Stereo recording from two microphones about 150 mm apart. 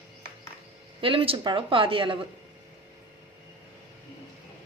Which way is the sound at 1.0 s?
35° right (ahead or behind).